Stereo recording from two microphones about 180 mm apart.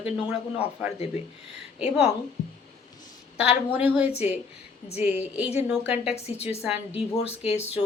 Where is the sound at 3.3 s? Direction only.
5° right (ahead or behind).